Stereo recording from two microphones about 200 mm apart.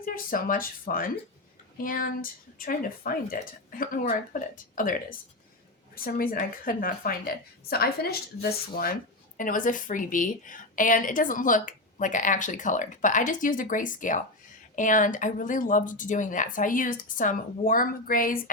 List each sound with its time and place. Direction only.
0.0 s a woman's voice: 45° left (ahead or behind)